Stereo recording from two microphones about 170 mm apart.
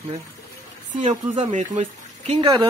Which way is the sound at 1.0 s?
40° right (ahead or behind).